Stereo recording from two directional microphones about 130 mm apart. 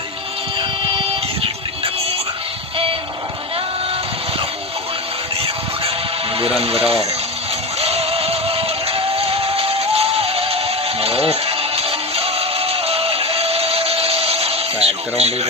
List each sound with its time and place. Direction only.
1.8 s music: 50° right (ahead or behind)
6.3 s speech: 50° right (ahead or behind)
7.8 s music: 50° right (ahead or behind)
15.2 s speech: 55° right (ahead or behind)